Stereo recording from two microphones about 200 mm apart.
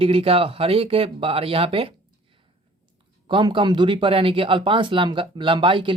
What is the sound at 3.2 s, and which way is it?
Speech, 25° right (ahead or behind).